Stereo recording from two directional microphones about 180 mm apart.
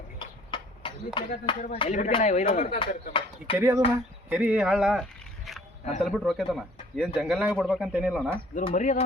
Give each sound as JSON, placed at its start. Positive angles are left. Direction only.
{"t": 0.5, "sound": "a sound", "side_deg": 25}
{"t": 1.5, "sound": "speech", "side_deg": 25}
{"t": 1.9, "sound": "speech", "side_deg": 40}
{"t": 2.7, "sound": "speech", "side_deg": 30}
{"t": 3.6, "sound": "speech", "side_deg": -10}
{"t": 8.5, "sound": "speech", "side_deg": 45}